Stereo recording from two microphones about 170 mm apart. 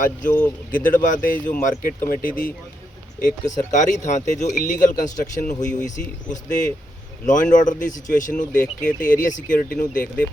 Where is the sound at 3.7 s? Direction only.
45° left (ahead or behind).